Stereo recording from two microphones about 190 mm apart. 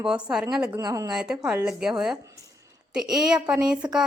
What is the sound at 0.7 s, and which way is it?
Speech, 15° right (ahead or behind).